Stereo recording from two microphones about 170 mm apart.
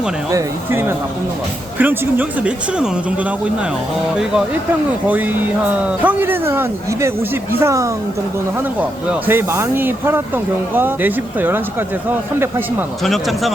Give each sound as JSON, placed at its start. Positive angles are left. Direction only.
{"t": 0.3, "sound": "speech", "side_deg": -15}
{"t": 5.0, "sound": "a woman's voice", "side_deg": -10}
{"t": 13.1, "sound": "speech", "side_deg": 0}